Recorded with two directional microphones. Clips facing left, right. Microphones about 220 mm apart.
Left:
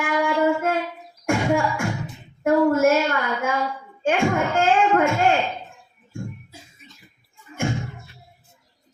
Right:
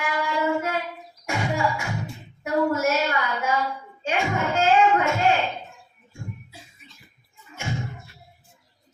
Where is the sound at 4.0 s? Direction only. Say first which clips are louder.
Left 5 dB; 50° left (ahead or behind).